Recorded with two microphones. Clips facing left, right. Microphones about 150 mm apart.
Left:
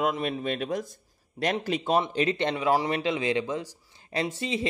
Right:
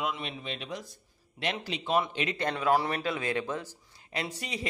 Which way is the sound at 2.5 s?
15° left (ahead or behind).